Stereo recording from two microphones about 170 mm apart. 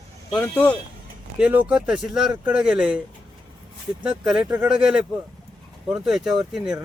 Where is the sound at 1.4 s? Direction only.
10° right (ahead or behind).